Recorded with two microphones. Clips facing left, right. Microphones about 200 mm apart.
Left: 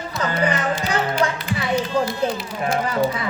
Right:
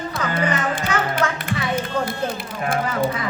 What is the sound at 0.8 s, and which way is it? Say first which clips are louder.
Speech: left 1 dB; 55° right (ahead or behind).